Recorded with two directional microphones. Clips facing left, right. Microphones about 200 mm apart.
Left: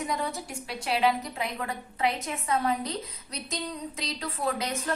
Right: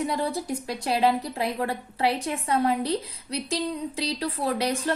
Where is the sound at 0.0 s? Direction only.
30° right (ahead or behind).